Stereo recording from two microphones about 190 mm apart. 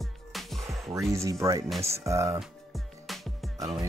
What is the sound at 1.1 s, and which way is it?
Music, 15° right (ahead or behind).